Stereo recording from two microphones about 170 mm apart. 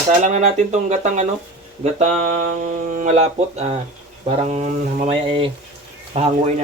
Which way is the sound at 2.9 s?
45° right (ahead or behind).